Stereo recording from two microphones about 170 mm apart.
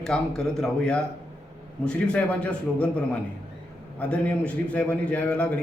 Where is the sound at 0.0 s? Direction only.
5° left (ahead or behind).